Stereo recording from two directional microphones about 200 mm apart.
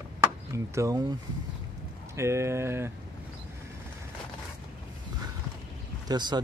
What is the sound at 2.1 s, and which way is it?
Speech, 15° right (ahead or behind).